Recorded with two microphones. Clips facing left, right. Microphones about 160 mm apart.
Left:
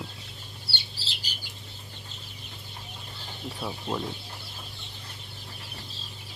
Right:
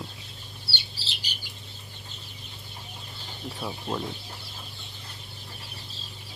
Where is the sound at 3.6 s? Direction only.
Centre (ahead or behind).